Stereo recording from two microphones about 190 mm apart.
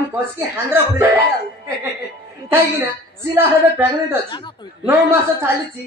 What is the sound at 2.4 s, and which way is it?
A woman's voice, 10° right (ahead or behind).